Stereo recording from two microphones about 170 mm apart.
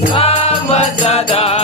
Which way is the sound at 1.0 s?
35° left (ahead or behind).